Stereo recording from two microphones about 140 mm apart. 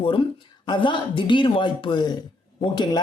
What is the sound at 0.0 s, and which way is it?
Speech, 35° left (ahead or behind).